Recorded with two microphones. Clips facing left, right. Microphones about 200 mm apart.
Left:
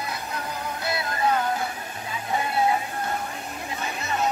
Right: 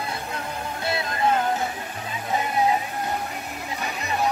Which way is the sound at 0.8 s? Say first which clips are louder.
Right 2 dB; 25° right (ahead or behind).